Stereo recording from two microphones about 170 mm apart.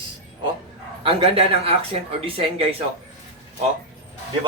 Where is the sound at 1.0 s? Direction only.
35° right (ahead or behind).